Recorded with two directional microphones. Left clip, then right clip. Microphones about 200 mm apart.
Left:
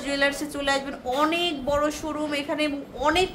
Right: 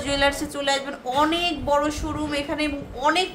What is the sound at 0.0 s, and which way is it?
A woman's voice, centre (ahead or behind).